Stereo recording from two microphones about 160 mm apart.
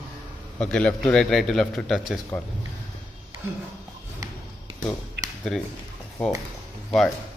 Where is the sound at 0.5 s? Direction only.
5° left (ahead or behind).